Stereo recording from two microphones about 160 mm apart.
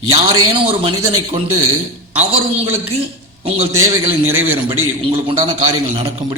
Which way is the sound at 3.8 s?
15° right (ahead or behind).